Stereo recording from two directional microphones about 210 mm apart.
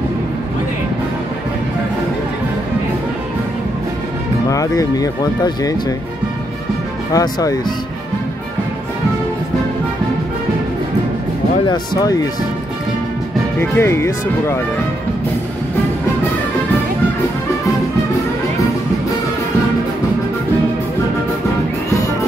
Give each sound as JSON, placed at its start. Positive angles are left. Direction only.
{"t": 4.5, "sound": "speech", "side_deg": 15}
{"t": 7.1, "sound": "speech", "side_deg": 15}
{"t": 11.6, "sound": "speech", "side_deg": 20}
{"t": 13.6, "sound": "speech", "side_deg": 10}